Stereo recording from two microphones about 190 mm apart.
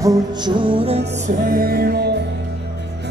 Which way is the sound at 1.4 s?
50° right (ahead or behind).